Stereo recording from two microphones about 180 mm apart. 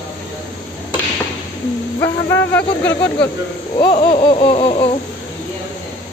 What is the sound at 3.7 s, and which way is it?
Laughter, 30° left (ahead or behind).